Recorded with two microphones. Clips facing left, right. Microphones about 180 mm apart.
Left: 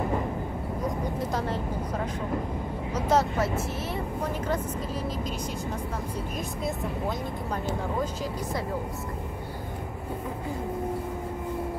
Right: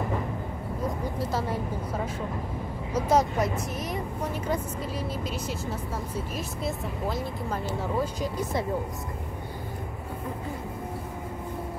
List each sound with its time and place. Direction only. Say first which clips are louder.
2.9 s speech: right 1 dB; 10° right (ahead or behind)
6.3 s speech: left 1 dB; 5° right (ahead or behind)
8.0 s speech: right 1 dB; 20° right (ahead or behind)